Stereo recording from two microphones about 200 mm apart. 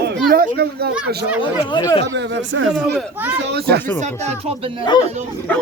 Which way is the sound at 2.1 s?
65° right (ahead or behind).